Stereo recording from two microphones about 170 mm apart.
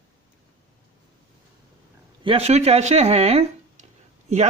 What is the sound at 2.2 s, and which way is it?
Speech, 35° right (ahead or behind).